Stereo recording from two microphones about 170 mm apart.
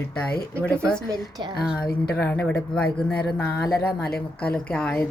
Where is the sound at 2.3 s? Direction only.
10° left (ahead or behind).